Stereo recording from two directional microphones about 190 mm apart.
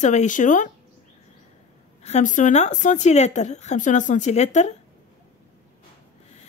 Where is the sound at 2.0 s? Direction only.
35° left (ahead or behind).